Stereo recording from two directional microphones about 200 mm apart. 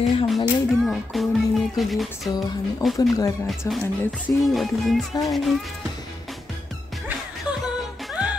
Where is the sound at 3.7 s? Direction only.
15° left (ahead or behind).